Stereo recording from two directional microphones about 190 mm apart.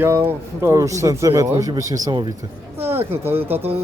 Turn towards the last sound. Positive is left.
turn(degrees=-10)  # may be behind; listen again after turning